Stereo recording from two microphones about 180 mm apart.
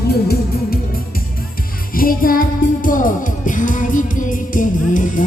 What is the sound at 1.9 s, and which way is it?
Music, 55° left (ahead or behind).